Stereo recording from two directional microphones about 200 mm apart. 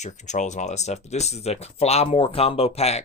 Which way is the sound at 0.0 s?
35° left (ahead or behind).